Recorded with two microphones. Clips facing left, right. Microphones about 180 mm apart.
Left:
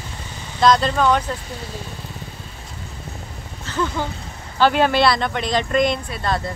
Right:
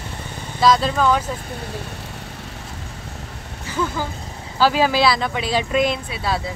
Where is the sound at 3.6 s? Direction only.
5° right (ahead or behind).